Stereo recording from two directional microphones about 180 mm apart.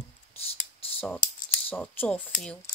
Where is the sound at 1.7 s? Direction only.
10° left (ahead or behind).